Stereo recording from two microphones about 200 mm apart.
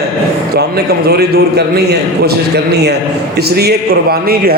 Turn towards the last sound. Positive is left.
turn(degrees=-50)  # may be behind; listen again after turning